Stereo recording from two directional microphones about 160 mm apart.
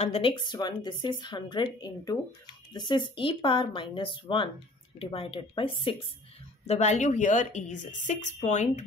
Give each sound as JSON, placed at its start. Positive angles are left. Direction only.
{"t": 0.0, "sound": "speech", "side_deg": 35}
{"t": 6.6, "sound": "a woman's voice", "side_deg": 40}